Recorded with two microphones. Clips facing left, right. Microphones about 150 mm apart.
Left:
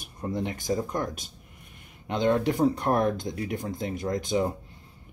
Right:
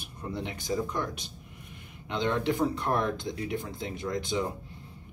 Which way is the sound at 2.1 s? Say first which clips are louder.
Left 4 dB; 45° left (ahead or behind).